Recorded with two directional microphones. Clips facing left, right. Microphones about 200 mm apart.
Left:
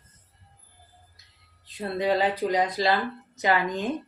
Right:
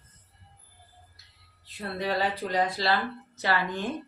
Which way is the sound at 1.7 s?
20° left (ahead or behind).